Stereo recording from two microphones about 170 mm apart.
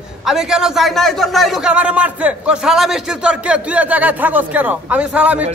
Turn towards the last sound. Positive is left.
turn(degrees=-10)  # may be behind; listen again after turning